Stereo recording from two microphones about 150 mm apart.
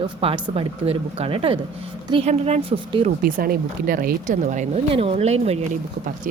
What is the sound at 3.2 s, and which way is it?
Speech, 75° right (ahead or behind).